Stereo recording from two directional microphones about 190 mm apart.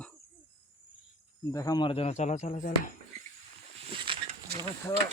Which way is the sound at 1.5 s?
20° left (ahead or behind).